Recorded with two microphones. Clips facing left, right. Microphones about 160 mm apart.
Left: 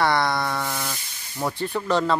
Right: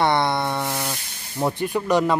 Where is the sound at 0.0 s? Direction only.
25° right (ahead or behind).